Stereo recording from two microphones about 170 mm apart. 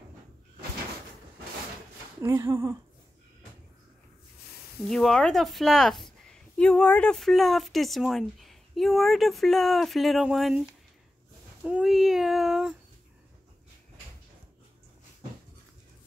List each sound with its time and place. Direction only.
2.2 s speech: 20° right (ahead or behind)
4.8 s a woman's voice: centre (ahead or behind)
11.6 s a woman's voice: 5° right (ahead or behind)